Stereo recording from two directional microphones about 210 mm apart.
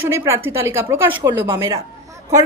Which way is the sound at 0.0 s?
10° right (ahead or behind).